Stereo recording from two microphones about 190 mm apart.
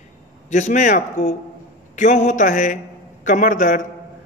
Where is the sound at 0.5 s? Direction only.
40° left (ahead or behind).